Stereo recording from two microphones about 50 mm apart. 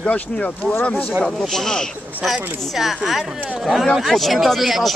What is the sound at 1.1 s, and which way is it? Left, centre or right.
Speech, centre.